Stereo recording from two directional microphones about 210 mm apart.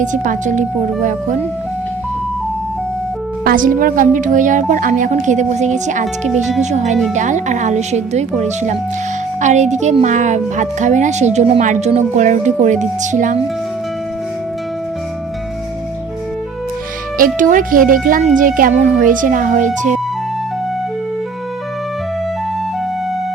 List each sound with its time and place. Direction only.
0.0 s speech: 35° right (ahead or behind)
3.4 s speech: 40° right (ahead or behind)
17.2 s speech: 40° right (ahead or behind)